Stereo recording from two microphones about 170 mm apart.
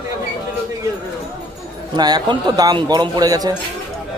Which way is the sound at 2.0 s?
25° right (ahead or behind).